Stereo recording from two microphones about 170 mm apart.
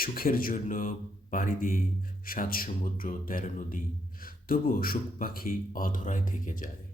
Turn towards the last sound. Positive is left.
turn(degrees=50)  # may be behind; listen again after turning